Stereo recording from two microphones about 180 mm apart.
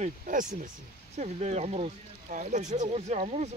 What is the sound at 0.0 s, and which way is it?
Speech, 45° right (ahead or behind).